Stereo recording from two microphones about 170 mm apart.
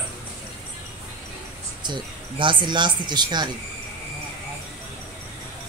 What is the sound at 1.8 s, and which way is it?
Speech, 30° right (ahead or behind).